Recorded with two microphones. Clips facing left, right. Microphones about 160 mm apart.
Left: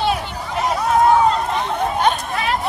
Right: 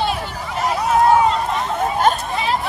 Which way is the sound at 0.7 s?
5° right (ahead or behind).